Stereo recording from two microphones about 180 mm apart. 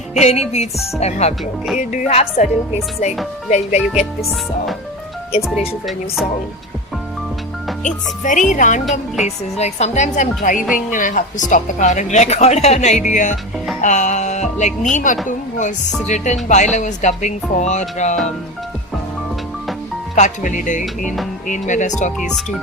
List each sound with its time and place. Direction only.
0.1 s a woman's voice: 40° left (ahead or behind)
3.8 s speech: 5° right (ahead or behind)
7.9 s speech: 45° left (ahead or behind)
8.8 s speech: centre (ahead or behind)
9.2 s a woman's voice: 40° left (ahead or behind)
20.1 s speech: 45° left (ahead or behind)